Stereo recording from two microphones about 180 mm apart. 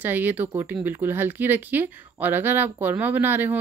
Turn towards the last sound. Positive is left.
turn(degrees=-10)  # may be behind; listen again after turning